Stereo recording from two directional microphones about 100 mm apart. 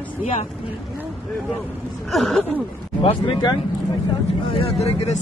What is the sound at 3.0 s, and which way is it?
Speech, 65° left (ahead or behind).